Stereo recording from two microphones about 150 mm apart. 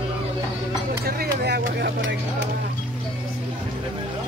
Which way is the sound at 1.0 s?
90° right.